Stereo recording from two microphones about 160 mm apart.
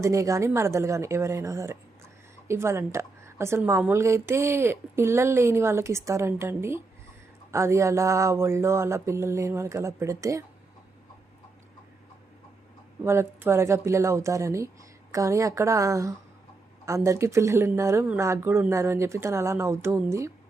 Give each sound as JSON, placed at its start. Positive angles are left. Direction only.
{"t": 0.0, "sound": "a woman's voice", "side_deg": -20}
{"t": 13.1, "sound": "a woman's voice", "side_deg": -15}